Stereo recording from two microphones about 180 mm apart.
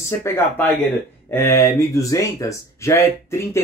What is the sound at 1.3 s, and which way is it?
Speech, 15° left (ahead or behind).